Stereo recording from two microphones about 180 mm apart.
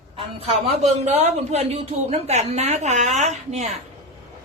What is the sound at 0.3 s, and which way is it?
A woman's voice, 35° right (ahead or behind).